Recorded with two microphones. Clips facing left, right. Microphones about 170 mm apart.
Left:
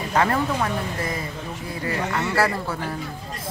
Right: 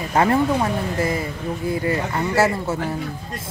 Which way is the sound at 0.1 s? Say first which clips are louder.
Right 4 dB; 25° right (ahead or behind).